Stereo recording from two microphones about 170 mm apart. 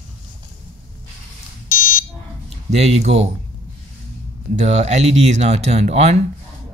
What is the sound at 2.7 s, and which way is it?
Speech, 40° right (ahead or behind).